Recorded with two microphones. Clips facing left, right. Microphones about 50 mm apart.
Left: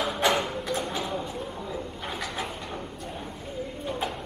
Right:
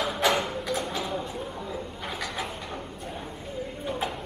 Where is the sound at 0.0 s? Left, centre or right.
Centre.